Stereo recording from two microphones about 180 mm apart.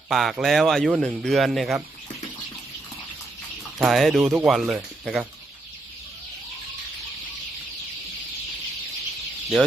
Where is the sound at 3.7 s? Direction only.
Centre (ahead or behind).